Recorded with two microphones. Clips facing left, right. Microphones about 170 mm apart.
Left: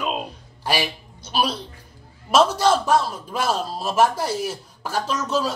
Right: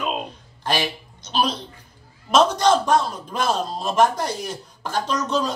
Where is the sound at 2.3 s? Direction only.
5° left (ahead or behind).